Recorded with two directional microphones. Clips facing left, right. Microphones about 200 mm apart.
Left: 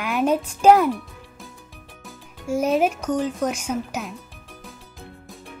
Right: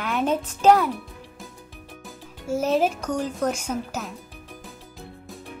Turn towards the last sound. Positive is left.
turn(degrees=10)  # may be behind; listen again after turning